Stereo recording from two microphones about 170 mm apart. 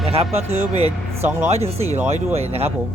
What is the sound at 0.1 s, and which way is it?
Speech, 35° right (ahead or behind).